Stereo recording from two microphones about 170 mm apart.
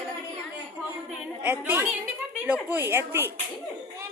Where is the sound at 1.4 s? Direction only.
10° right (ahead or behind).